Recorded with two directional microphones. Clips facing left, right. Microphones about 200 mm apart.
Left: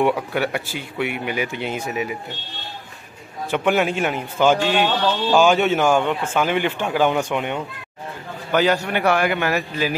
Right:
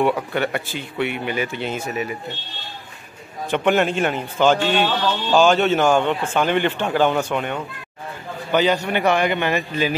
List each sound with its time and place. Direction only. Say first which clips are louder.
0.1 s speech: even; 5° left (ahead or behind)
3.4 s a man's voice: right 1 dB; 5° left (ahead or behind)